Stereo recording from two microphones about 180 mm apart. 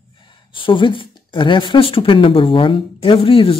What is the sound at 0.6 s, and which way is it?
Speech, 30° left (ahead or behind).